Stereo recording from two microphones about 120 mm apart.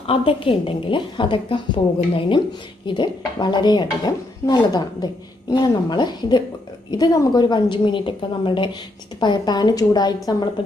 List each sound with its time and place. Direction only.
0.0 s a woman's voice: 50° left (ahead or behind); by 10.5 s 35° left (ahead or behind)